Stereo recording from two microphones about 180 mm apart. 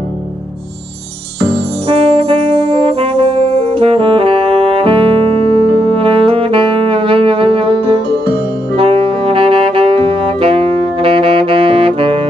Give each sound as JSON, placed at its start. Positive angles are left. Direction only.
{"t": 1.5, "sound": "brass instrument", "side_deg": -30}
{"t": 5.9, "sound": "saxophone", "side_deg": -30}